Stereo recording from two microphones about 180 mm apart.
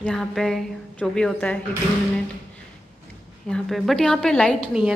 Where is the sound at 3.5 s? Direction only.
Centre (ahead or behind).